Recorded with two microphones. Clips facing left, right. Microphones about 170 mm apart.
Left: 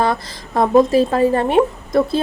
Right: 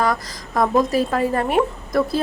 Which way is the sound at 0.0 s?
30° left (ahead or behind).